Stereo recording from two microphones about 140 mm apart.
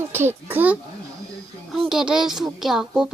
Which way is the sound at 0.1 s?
15° right (ahead or behind).